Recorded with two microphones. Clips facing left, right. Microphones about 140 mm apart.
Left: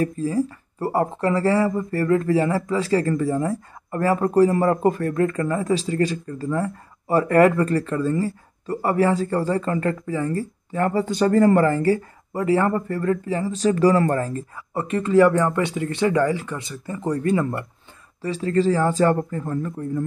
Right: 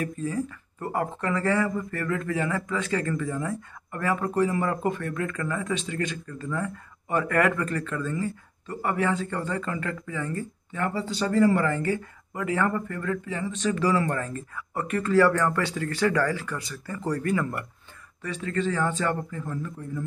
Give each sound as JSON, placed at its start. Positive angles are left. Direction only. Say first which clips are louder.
{"t": 0.0, "sound": "speech", "louder": "left 7 dB", "side_deg": 30}